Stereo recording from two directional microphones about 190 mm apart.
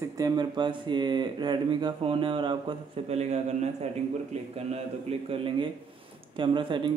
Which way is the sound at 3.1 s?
35° right (ahead or behind).